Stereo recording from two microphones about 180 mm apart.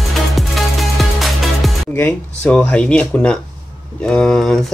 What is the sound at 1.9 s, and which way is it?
Speech, 10° left (ahead or behind).